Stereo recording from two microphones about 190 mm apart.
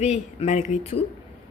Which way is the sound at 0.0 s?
35° left (ahead or behind).